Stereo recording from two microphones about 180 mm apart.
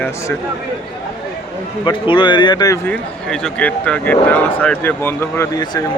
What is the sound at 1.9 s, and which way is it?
Speech, 25° left (ahead or behind).